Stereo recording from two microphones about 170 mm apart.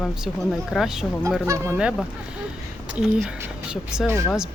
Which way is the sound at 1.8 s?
5° right (ahead or behind).